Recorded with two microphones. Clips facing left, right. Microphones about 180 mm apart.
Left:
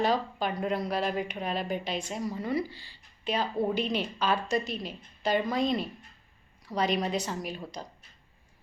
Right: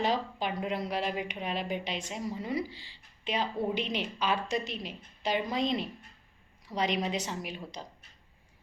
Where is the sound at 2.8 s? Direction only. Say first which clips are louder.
Even; 45° left (ahead or behind).